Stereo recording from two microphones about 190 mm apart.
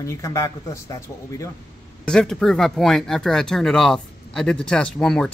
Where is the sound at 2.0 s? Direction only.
5° left (ahead or behind).